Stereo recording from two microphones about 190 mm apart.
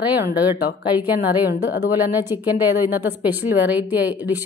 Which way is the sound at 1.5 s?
60° left (ahead or behind).